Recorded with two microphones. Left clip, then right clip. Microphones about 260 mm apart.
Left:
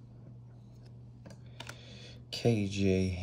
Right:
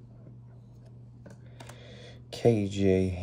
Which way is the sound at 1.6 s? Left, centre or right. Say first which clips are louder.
Even; centre.